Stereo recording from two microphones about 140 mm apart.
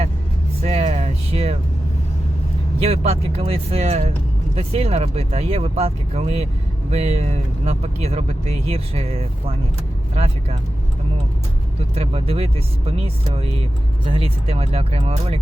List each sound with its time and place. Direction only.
0.6 s music: 45° right (ahead or behind)
2.8 s speech: 45° right (ahead or behind)
11.9 s speech: 45° right (ahead or behind)
14.1 s speech: 40° right (ahead or behind)